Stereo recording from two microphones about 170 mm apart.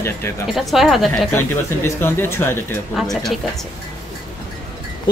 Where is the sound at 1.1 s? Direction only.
10° left (ahead or behind).